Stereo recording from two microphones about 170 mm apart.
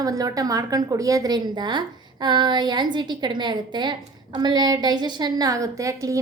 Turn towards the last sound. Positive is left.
turn(degrees=-20)  # may be behind; listen again after turning